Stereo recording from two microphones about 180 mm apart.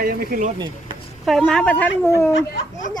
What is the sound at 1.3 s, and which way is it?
Speech, centre (ahead or behind).